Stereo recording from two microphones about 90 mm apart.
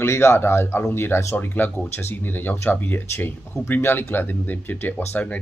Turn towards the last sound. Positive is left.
turn(degrees=20)  # may be behind; listen again after turning